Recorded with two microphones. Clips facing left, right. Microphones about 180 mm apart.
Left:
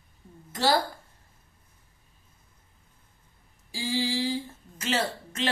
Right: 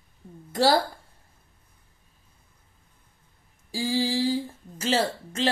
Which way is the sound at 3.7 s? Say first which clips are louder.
Right 3 dB; 40° right (ahead or behind).